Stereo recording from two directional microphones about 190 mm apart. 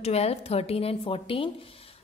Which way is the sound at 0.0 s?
35° left (ahead or behind).